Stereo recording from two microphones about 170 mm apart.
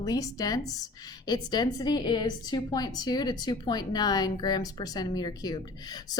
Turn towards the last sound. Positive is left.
turn(degrees=25)  # may be behind; listen again after turning